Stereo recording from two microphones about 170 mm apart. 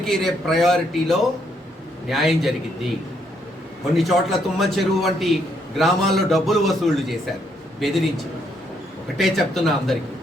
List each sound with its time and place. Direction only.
0.0 s a man's voice: centre (ahead or behind)
3.9 s a man's voice: centre (ahead or behind)
9.1 s a man's voice: centre (ahead or behind)